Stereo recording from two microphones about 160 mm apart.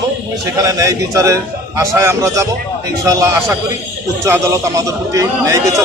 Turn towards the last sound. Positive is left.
turn(degrees=-20)  # may be behind; listen again after turning